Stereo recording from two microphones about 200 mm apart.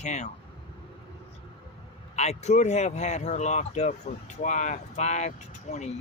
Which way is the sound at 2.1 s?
35° left (ahead or behind).